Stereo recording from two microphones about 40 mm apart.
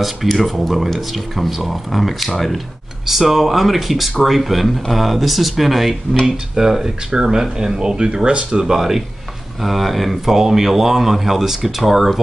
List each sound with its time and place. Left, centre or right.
0.0 s speech: centre
6.2 s speech: centre
8.5 s speech: centre